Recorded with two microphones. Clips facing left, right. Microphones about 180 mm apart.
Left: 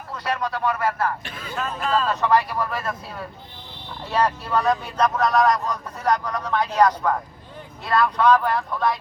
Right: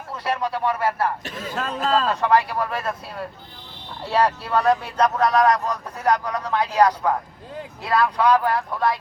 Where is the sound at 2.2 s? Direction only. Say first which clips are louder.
Right 1 dB; 5° right (ahead or behind).